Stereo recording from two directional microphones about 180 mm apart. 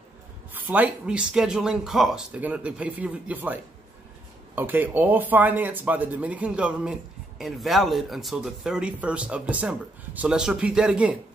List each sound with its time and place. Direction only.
0.6 s speech: 10° right (ahead or behind)
4.6 s speech: 10° right (ahead or behind)